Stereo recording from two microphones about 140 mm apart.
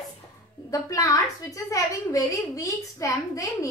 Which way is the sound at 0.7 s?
25° left (ahead or behind).